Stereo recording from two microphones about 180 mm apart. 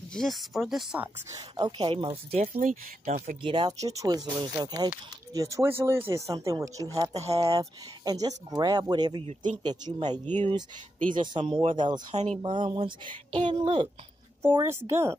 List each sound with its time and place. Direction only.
0.1 s speech: centre (ahead or behind)
1.6 s speech: 30° right (ahead or behind)
3.4 s speech: 25° right (ahead or behind)
9.6 s speech: 25° right (ahead or behind)
11.0 s speech: 45° right (ahead or behind)
11.3 s speech: 30° right (ahead or behind)
14.5 s speech: 15° right (ahead or behind)